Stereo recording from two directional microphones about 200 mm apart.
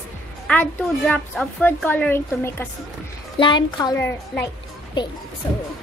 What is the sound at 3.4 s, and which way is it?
A woman's voice, 20° left (ahead or behind).